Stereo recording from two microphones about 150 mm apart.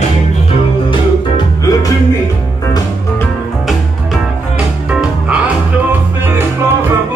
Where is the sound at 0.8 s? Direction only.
30° left (ahead or behind).